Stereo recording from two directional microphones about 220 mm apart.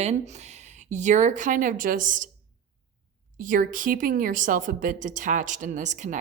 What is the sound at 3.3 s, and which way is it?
A woman's voice, 35° right (ahead or behind).